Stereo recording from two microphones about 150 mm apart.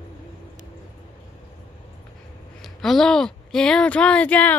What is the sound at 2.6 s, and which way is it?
Speech, centre (ahead or behind).